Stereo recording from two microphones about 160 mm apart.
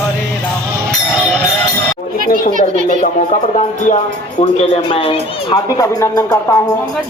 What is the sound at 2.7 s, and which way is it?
Speech, 50° right (ahead or behind).